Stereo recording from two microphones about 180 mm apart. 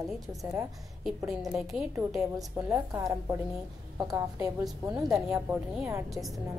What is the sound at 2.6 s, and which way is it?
A woman's voice, 15° right (ahead or behind).